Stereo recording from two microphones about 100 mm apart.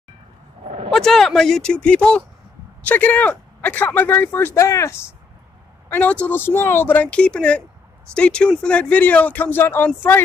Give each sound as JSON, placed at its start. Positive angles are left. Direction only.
{"t": 0.9, "sound": "speech", "side_deg": 5}
{"t": 5.9, "sound": "speech", "side_deg": 15}